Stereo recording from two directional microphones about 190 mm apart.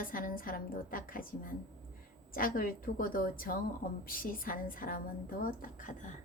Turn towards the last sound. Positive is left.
turn(degrees=45)  # may be behind; listen again after turning